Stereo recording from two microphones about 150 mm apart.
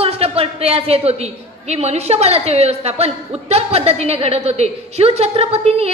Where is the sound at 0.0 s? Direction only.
40° right (ahead or behind).